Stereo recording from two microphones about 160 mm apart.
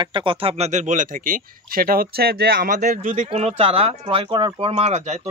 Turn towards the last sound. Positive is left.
turn(degrees=-45)  # may be behind; listen again after turning